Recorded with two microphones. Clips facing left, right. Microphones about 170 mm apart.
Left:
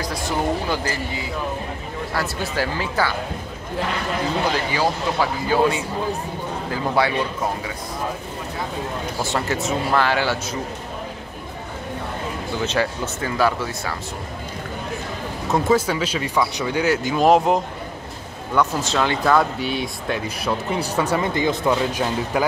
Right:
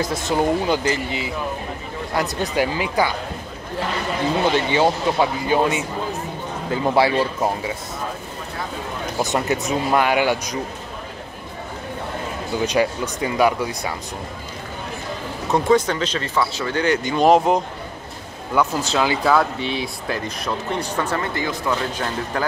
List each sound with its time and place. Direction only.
0.0 s speech: 20° right (ahead or behind)
4.5 s speech: 25° right (ahead or behind)
9.2 s speech: 20° right (ahead or behind)
12.6 s speech: 15° right (ahead or behind)
15.5 s speech: 5° left (ahead or behind)